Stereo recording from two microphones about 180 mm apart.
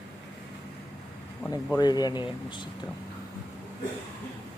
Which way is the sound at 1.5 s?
20° left (ahead or behind).